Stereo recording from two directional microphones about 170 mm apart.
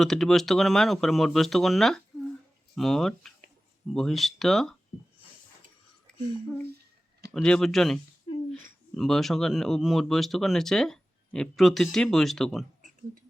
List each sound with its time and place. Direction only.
0.0 s speech: 5° left (ahead or behind)
7.3 s speech: 5° left (ahead or behind)
8.3 s a sound: 30° left (ahead or behind)
9.0 s speech: centre (ahead or behind)